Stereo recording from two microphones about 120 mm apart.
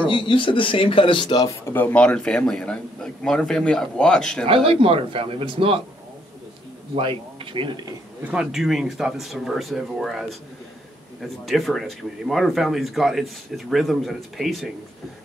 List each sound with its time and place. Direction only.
0.0 s a man's voice: 45° left (ahead or behind); by 1.8 s 30° left (ahead or behind)
1.8 s a man's voice: 10° left (ahead or behind)
4.5 s a man's voice: 50° right (ahead or behind)
7.0 s a man's voice: 45° right (ahead or behind)
8.2 s speech: 10° right (ahead or behind)